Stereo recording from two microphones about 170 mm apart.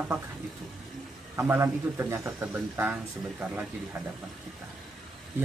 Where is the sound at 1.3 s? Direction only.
15° right (ahead or behind).